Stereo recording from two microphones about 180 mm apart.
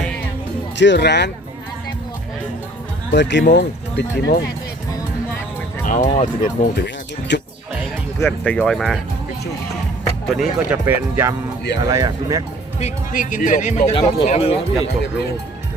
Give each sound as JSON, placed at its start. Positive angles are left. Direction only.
{"t": 0.8, "sound": "speech", "side_deg": 75}
{"t": 3.1, "sound": "speech", "side_deg": 75}
{"t": 5.8, "sound": "speech", "side_deg": 50}
{"t": 6.7, "sound": "speech", "side_deg": 75}
{"t": 8.2, "sound": "speech", "side_deg": 5}
{"t": 10.2, "sound": "speech", "side_deg": 0}
{"t": 12.8, "sound": "speech", "side_deg": 45}